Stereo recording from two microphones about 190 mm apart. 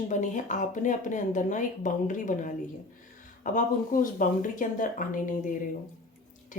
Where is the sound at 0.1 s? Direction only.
40° left (ahead or behind).